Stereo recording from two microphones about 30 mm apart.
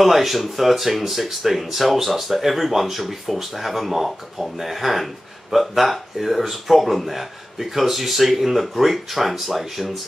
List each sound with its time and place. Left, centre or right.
0.0 s speech: centre